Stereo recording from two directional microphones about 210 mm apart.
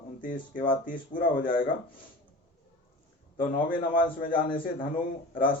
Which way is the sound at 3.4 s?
40° left (ahead or behind).